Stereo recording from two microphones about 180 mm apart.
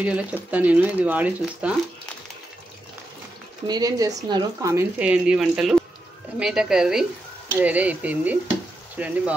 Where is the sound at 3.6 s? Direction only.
20° right (ahead or behind).